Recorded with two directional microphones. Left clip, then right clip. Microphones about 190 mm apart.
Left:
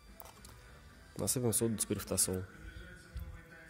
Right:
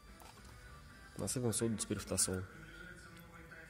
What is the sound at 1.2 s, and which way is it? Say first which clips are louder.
Speech: left 4 dB; 15° left (ahead or behind).